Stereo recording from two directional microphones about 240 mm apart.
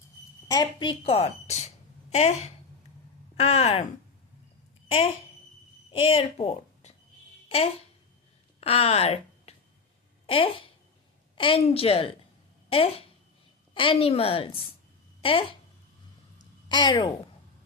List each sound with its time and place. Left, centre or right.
0.4 s a woman's voice: centre
4.9 s a woman's voice: left
16.6 s a woman's voice: centre